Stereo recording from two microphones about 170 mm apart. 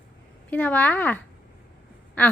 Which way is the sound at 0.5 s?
10° left (ahead or behind).